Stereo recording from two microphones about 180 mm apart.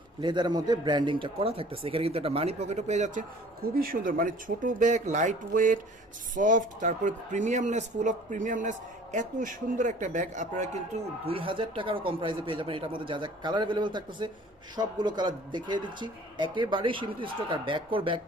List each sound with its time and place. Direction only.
0.2 s speech: 25° right (ahead or behind); by 3.2 s 40° right (ahead or behind)
3.8 s speech: 50° right (ahead or behind); by 18.2 s 30° right (ahead or behind)